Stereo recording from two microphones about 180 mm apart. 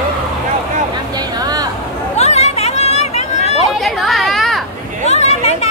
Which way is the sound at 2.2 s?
35° left (ahead or behind).